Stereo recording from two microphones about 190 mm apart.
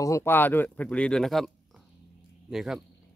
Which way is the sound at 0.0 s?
15° left (ahead or behind).